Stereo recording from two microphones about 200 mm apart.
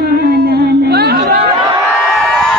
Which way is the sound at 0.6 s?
50° right (ahead or behind).